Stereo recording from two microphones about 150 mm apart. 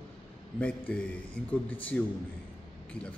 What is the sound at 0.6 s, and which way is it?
A man's voice, 10° left (ahead or behind).